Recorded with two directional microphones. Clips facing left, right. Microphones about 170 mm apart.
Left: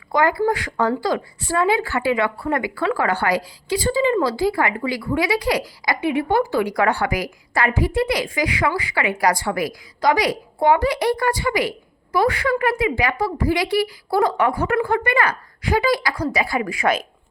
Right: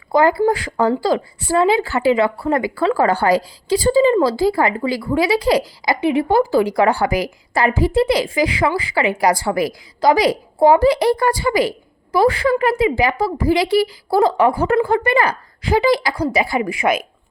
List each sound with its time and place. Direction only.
0.1 s speech: 30° right (ahead or behind); by 17.1 s 15° right (ahead or behind)